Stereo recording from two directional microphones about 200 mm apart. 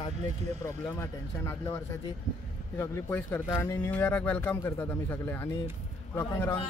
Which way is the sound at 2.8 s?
10° left (ahead or behind).